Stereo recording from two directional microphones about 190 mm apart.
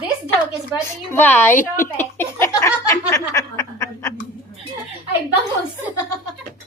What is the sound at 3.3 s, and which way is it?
Snicker, 15° left (ahead or behind).